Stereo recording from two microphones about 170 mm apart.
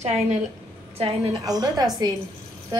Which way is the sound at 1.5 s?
20° right (ahead or behind).